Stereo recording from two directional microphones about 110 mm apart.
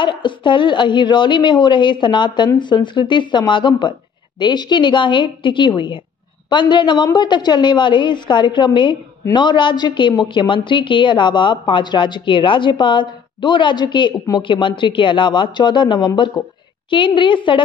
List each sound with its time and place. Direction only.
0.0 s a woman's voice: 45° left (ahead or behind)
16.4 s a woman's voice: 30° left (ahead or behind)
16.9 s a woman's voice: 45° left (ahead or behind)